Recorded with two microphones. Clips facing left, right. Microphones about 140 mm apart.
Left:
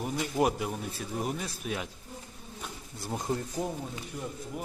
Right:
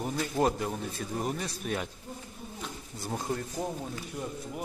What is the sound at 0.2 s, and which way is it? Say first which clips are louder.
Speech: even; 10° left (ahead or behind).